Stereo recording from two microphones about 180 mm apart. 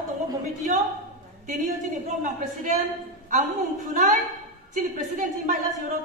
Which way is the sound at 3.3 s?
45° right (ahead or behind).